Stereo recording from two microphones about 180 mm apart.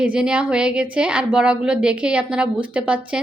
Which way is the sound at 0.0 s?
5° right (ahead or behind).